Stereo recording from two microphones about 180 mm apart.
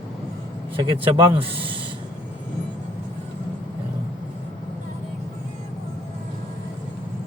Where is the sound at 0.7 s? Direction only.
25° right (ahead or behind).